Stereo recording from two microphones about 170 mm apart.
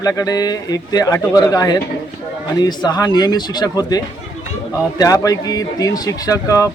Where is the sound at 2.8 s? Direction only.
25° left (ahead or behind).